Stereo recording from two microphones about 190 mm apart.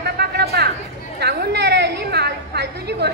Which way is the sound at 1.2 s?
60° right (ahead or behind).